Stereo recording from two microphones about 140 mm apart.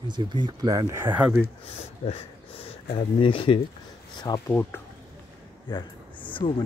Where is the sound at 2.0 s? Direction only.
45° left (ahead or behind).